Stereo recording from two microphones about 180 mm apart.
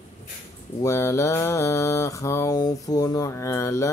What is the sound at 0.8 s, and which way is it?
Mantra, 15° left (ahead or behind).